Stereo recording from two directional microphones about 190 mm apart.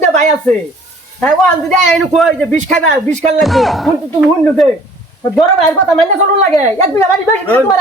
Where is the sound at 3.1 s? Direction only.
35° right (ahead or behind).